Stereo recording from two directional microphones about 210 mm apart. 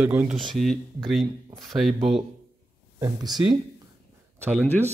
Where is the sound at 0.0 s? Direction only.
10° right (ahead or behind).